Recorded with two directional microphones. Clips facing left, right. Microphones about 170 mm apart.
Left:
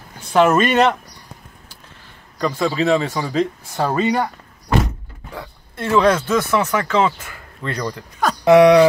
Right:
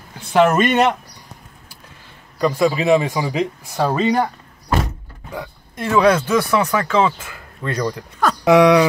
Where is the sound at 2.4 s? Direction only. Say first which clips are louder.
Right 2 dB; 10° right (ahead or behind).